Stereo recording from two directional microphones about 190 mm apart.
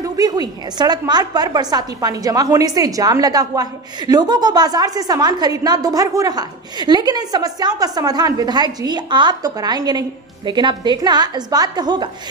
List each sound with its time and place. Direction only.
0.0 s a woman's voice: 20° right (ahead or behind)